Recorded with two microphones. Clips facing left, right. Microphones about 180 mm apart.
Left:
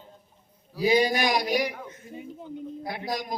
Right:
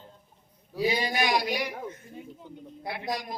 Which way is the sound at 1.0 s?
40° left (ahead or behind).